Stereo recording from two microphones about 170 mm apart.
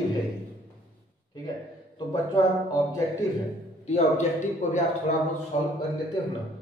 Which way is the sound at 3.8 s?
40° left (ahead or behind).